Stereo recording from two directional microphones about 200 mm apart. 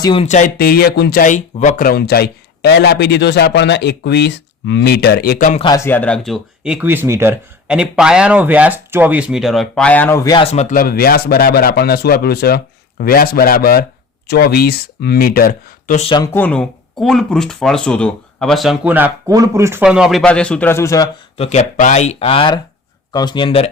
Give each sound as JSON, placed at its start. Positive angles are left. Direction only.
{"t": 0.0, "sound": "speech", "side_deg": 25}
{"t": 0.3, "sound": "speech", "side_deg": 40}
{"t": 5.5, "sound": "speech", "side_deg": 20}
{"t": 16.0, "sound": "speech", "side_deg": 25}
{"t": 21.3, "sound": "speech", "side_deg": 30}